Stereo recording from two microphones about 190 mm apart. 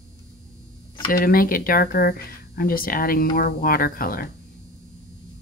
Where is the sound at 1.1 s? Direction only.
50° left (ahead or behind).